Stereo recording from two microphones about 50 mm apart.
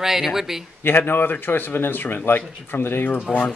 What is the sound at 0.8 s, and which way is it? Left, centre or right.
Speech, left.